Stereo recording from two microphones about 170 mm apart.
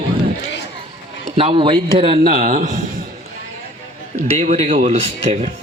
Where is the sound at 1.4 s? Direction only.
30° right (ahead or behind).